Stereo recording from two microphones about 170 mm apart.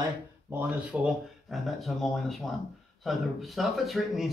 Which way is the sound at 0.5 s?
10° right (ahead or behind).